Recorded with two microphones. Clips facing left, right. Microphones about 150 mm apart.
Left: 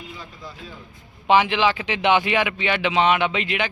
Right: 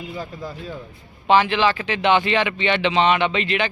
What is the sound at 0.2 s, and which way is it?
Speech, 45° right (ahead or behind).